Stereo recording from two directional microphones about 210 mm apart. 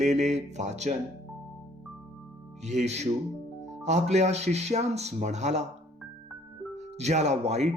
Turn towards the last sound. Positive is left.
turn(degrees=-30)  # may be behind; listen again after turning